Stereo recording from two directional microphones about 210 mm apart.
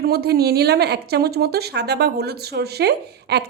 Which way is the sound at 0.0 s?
50° right (ahead or behind).